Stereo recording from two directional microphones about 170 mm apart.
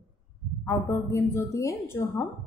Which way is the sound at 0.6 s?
15° left (ahead or behind).